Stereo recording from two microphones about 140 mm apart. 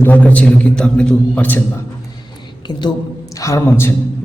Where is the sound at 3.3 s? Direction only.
25° left (ahead or behind).